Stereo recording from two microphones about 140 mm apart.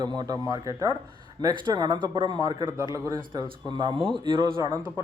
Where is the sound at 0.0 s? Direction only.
30° right (ahead or behind).